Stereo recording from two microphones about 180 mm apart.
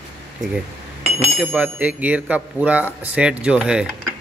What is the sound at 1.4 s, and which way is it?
Speech, 10° right (ahead or behind).